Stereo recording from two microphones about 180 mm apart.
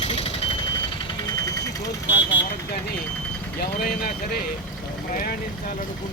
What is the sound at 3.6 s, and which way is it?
Speech, 55° left (ahead or behind).